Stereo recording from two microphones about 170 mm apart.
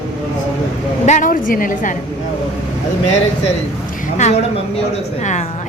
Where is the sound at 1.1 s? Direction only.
50° left (ahead or behind).